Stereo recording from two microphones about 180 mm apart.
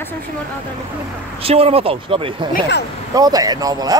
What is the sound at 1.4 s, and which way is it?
Speech, 35° right (ahead or behind).